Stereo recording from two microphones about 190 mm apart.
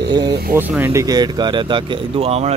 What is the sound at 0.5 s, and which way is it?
Speech, 10° right (ahead or behind).